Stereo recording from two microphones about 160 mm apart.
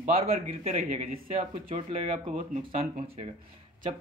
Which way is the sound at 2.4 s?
55° right (ahead or behind).